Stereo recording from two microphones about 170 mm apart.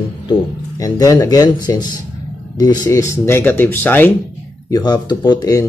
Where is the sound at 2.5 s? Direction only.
20° left (ahead or behind).